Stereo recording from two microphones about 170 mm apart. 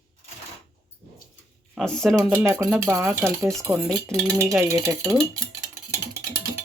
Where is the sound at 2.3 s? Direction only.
15° right (ahead or behind).